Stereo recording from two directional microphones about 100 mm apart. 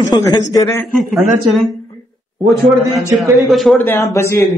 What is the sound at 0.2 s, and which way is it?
Speech, 40° left (ahead or behind).